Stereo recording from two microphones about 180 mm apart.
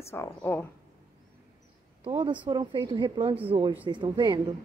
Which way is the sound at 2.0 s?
25° right (ahead or behind).